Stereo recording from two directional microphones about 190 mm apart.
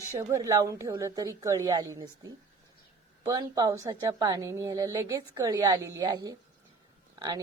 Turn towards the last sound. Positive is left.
turn(degrees=-20)  # may be behind; listen again after turning